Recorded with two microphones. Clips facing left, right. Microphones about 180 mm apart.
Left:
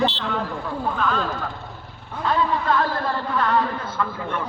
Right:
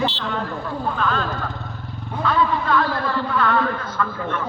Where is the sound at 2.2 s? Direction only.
40° left (ahead or behind).